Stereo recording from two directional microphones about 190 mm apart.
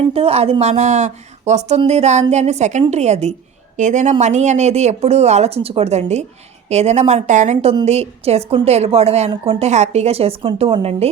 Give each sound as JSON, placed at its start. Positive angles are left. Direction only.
{"t": 0.1, "sound": "a woman's voice", "side_deg": -30}